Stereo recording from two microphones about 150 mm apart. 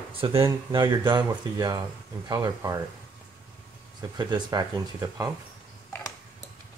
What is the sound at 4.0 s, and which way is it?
Speech, 30° right (ahead or behind).